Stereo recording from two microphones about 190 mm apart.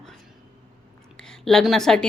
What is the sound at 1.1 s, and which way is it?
Speech, 5° left (ahead or behind).